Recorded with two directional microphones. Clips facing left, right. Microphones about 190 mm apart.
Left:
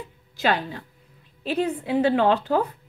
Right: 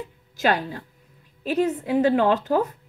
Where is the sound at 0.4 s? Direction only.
45° right (ahead or behind).